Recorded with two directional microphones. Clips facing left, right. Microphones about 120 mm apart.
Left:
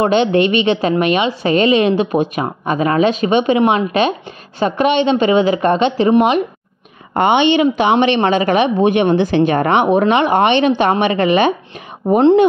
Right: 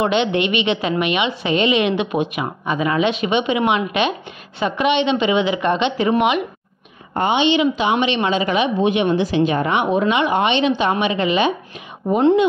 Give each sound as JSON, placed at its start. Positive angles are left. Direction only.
{"t": 0.0, "sound": "a woman's voice", "side_deg": 40}
{"t": 7.2, "sound": "speech", "side_deg": 60}